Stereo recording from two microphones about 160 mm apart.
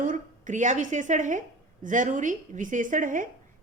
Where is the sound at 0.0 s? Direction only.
55° right (ahead or behind).